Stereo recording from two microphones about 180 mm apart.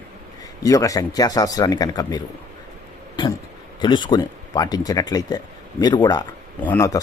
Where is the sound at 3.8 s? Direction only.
25° left (ahead or behind).